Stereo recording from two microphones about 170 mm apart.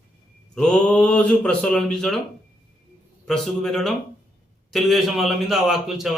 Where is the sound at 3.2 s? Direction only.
5° left (ahead or behind).